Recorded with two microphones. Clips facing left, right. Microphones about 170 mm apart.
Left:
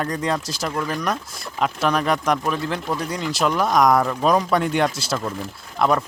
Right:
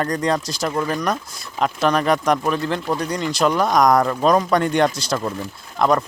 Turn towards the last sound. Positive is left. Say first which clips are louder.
# right 2 dB
turn(degrees=5)  # may be behind; listen again after turning